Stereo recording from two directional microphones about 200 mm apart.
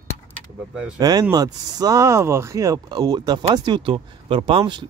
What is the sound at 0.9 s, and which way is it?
Speech, 20° right (ahead or behind).